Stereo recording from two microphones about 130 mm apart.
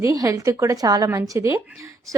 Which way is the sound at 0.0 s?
25° right (ahead or behind).